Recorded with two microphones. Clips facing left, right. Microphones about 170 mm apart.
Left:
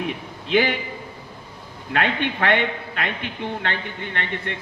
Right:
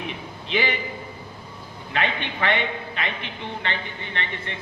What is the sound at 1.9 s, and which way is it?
A man's voice, 55° left (ahead or behind).